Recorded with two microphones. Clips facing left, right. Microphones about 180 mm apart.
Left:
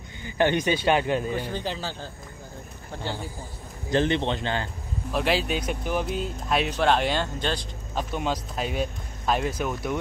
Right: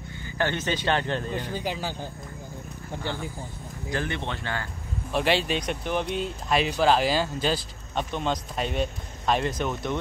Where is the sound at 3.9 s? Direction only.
25° left (ahead or behind).